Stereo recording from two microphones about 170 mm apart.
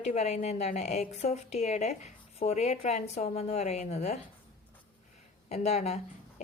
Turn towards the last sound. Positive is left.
turn(degrees=40)  # may be behind; listen again after turning